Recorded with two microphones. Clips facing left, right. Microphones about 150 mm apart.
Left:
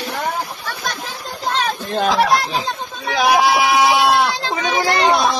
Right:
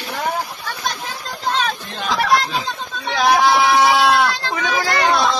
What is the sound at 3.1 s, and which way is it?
Speech, 10° left (ahead or behind).